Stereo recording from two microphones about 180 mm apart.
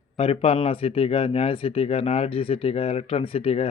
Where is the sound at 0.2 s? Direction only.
30° left (ahead or behind).